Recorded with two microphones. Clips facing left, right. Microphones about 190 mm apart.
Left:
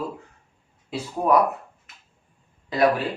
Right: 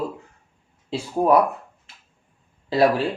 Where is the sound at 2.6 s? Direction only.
30° right (ahead or behind).